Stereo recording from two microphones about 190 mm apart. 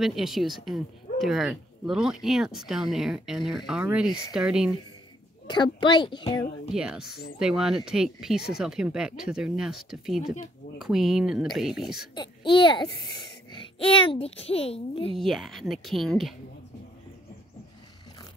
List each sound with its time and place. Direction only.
0.0 s speech: centre (ahead or behind)
5.5 s a child's voice: 25° left (ahead or behind)
6.7 s speech: 5° right (ahead or behind)
12.2 s a child's voice: 25° left (ahead or behind)
15.1 s speech: centre (ahead or behind)